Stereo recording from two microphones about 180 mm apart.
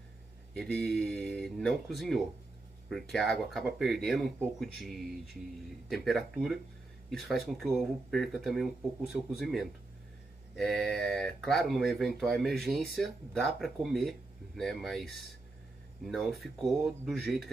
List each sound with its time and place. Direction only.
0.6 s speech: 5° left (ahead or behind)